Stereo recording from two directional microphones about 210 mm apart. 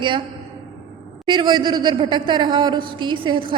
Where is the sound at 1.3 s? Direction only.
20° right (ahead or behind).